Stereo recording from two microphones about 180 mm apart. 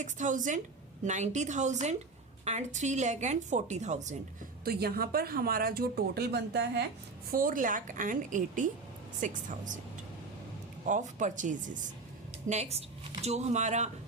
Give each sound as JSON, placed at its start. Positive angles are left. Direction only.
{"t": 0.0, "sound": "a woman's voice", "side_deg": -45}
{"t": 4.6, "sound": "a woman's voice", "side_deg": -60}
{"t": 7.3, "sound": "a woman's voice", "side_deg": -50}
{"t": 10.8, "sound": "a woman's voice", "side_deg": -45}